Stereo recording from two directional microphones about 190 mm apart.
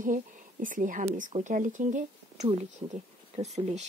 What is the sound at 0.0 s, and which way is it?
A woman's voice, 45° right (ahead or behind).